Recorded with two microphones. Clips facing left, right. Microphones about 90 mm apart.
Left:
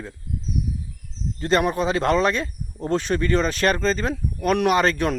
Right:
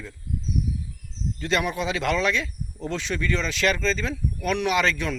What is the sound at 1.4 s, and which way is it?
Speech, 40° left (ahead or behind).